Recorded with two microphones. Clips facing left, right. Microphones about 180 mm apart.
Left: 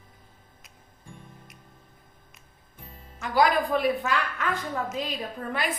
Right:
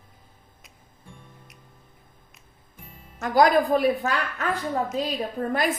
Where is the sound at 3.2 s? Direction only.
45° right (ahead or behind).